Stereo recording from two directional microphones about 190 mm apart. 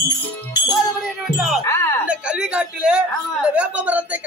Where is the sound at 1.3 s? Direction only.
Centre (ahead or behind).